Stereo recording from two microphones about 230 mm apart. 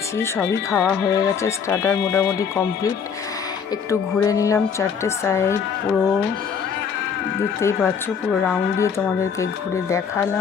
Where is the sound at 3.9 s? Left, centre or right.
Centre.